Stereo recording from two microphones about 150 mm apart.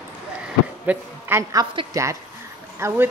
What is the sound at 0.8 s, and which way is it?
A woman's voice, 15° right (ahead or behind).